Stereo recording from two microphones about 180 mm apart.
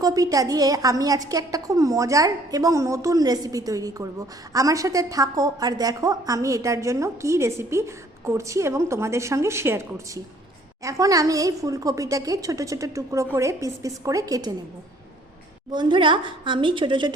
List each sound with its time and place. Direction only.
0.0 s a woman's voice: 20° right (ahead or behind)
10.8 s a woman's voice: 20° right (ahead or behind)
15.7 s a woman's voice: 25° right (ahead or behind)